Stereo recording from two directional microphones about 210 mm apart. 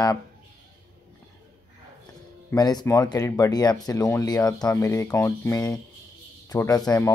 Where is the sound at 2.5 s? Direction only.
20° left (ahead or behind).